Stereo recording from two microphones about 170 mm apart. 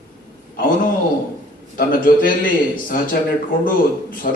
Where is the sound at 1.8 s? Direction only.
55° left (ahead or behind).